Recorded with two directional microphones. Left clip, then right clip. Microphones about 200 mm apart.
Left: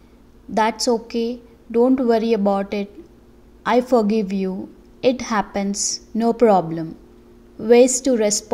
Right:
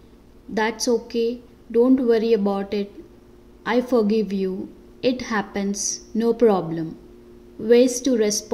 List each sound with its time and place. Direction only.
0.6 s a woman's voice: 15° left (ahead or behind)